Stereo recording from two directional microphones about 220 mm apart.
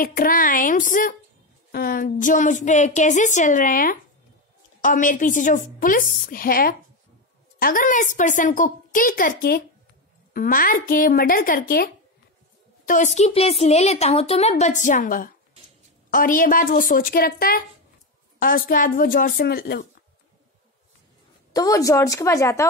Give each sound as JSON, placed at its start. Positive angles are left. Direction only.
{"t": 0.0, "sound": "a woman's voice", "side_deg": 40}
{"t": 21.5, "sound": "speech", "side_deg": 15}